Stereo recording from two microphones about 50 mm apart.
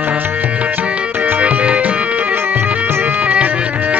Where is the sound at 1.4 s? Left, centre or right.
Right.